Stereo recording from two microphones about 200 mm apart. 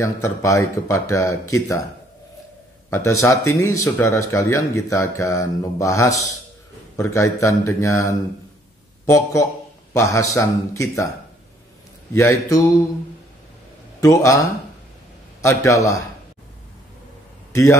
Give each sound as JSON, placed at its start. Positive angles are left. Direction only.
{"t": 0.0, "sound": "speech", "side_deg": 15}
{"t": 2.9, "sound": "speech", "side_deg": 15}
{"t": 12.1, "sound": "speech", "side_deg": 15}
{"t": 14.0, "sound": "speech", "side_deg": 15}
{"t": 15.4, "sound": "speech", "side_deg": 15}
{"t": 17.5, "sound": "a sound", "side_deg": 15}